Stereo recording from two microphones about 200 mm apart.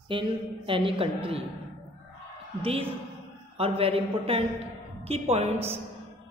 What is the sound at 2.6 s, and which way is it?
A woman's voice, 25° right (ahead or behind).